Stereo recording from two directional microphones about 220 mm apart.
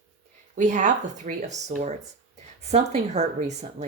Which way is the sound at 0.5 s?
35° right (ahead or behind).